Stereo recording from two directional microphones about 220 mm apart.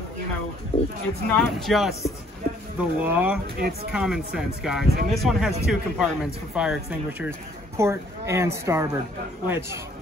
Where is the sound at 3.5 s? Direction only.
45° right (ahead or behind).